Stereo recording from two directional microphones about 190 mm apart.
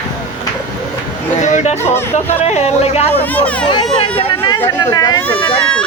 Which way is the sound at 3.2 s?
10° left (ahead or behind).